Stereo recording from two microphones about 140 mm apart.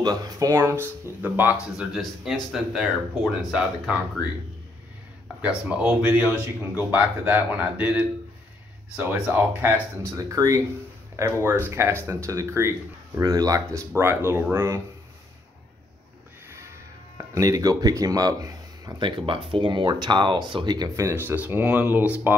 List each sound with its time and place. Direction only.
0.0 s speech: 25° right (ahead or behind)
2.0 s speech: centre (ahead or behind)
5.7 s speech: 15° right (ahead or behind)
16.4 s music: 20° right (ahead or behind)
17.2 s speech: 25° right (ahead or behind)